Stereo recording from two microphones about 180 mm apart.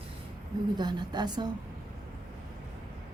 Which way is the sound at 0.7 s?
25° right (ahead or behind).